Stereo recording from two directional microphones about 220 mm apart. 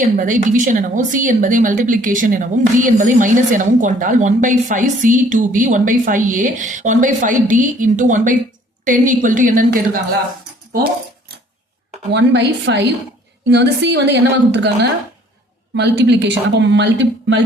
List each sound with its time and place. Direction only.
0.0 s speech: 35° right (ahead or behind)
12.1 s speech: 50° right (ahead or behind)